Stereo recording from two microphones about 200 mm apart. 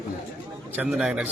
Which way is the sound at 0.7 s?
5° right (ahead or behind).